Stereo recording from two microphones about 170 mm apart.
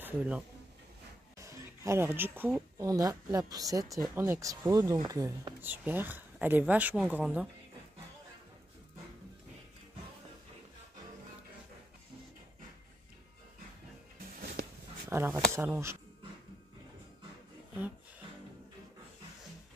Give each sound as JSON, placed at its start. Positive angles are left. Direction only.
{"t": 0.0, "sound": "speech", "side_deg": -5}
{"t": 1.4, "sound": "speech", "side_deg": -20}
{"t": 14.4, "sound": "a sound", "side_deg": -65}
{"t": 15.0, "sound": "speech", "side_deg": -10}